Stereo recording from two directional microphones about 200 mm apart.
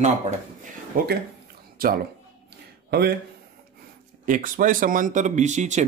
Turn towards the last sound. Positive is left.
turn(degrees=-35)  # may be behind; listen again after turning